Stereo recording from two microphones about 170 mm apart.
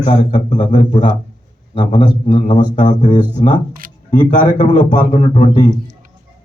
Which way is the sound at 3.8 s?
55° right (ahead or behind).